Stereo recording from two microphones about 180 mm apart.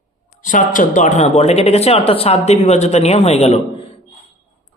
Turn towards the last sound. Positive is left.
turn(degrees=35)  # may be behind; listen again after turning